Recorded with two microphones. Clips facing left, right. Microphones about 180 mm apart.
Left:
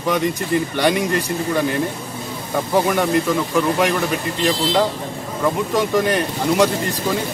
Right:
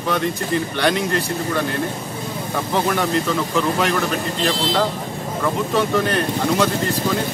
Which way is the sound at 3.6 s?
10° left (ahead or behind).